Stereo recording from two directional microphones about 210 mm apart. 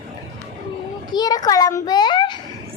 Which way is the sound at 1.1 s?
20° left (ahead or behind).